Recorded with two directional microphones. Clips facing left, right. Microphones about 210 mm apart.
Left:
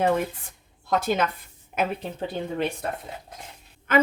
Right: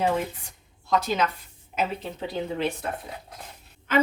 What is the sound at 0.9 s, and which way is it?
Speech, 50° left (ahead or behind).